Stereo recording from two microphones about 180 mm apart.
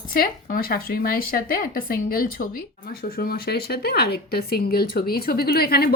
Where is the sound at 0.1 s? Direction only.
55° left (ahead or behind).